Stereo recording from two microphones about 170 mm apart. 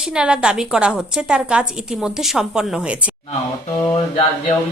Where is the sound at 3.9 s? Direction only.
25° left (ahead or behind).